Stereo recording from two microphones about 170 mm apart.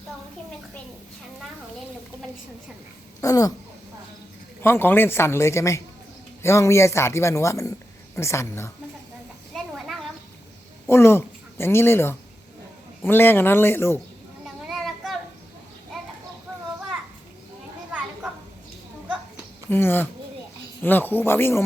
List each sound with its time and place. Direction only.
3.2 s speech: 20° left (ahead or behind)
4.6 s speech: 15° left (ahead or behind)
9.6 s a sound: centre (ahead or behind)
10.8 s speech: 15° left (ahead or behind)
14.4 s children playing: centre (ahead or behind)
19.7 s speech: 10° left (ahead or behind)